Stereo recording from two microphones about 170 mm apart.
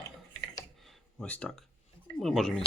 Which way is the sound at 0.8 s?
5° left (ahead or behind).